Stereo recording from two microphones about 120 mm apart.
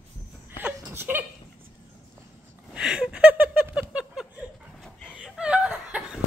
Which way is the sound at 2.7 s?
5° right (ahead or behind).